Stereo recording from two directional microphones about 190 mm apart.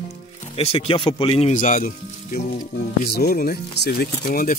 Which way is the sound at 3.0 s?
55° left (ahead or behind).